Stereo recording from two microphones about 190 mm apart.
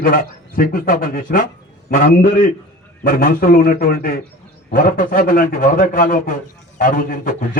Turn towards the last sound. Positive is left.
turn(degrees=45)  # may be behind; listen again after turning